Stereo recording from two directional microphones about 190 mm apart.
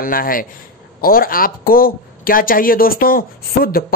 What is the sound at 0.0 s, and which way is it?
Speech, 50° left (ahead or behind).